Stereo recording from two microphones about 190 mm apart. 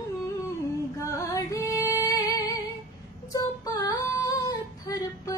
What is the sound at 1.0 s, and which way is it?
Music, 15° left (ahead or behind).